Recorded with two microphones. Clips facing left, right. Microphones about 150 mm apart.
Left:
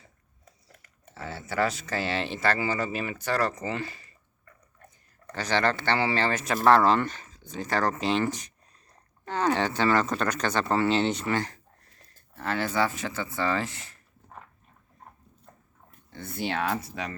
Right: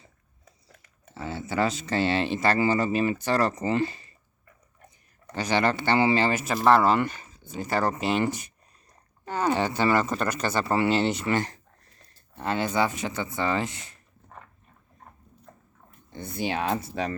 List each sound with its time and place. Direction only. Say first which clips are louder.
1.1 s speech: right 2 dB; 20° right (ahead or behind)
5.3 s speech: right 2 dB; 15° right (ahead or behind)
6.4 s speech: left 2 dB; 5° right (ahead or behind)
11.3 s speech: right 2 dB; 20° right (ahead or behind)
16.0 s speech: right 2 dB; 15° right (ahead or behind)